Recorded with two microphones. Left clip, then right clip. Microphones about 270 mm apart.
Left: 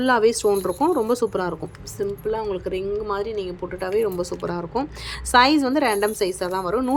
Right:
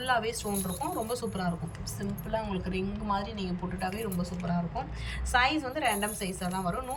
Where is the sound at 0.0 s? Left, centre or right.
Centre.